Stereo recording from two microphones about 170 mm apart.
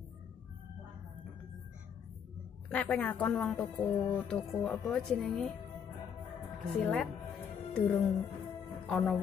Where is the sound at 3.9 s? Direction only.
20° left (ahead or behind).